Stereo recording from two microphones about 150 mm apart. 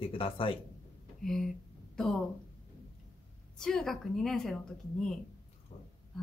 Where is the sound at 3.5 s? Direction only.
5° left (ahead or behind).